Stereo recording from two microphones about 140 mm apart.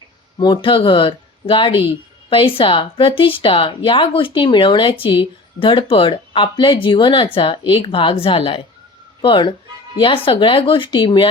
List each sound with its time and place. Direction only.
0.3 s speech: 35° left (ahead or behind)